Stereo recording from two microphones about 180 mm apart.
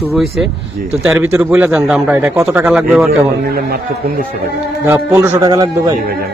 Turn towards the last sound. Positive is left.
turn(degrees=-20)  # may be behind; listen again after turning